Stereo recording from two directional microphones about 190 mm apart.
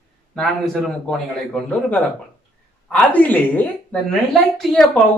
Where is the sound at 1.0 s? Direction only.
Centre (ahead or behind).